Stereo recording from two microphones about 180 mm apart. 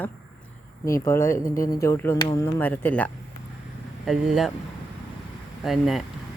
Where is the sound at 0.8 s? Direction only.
15° left (ahead or behind); by 4.5 s centre (ahead or behind).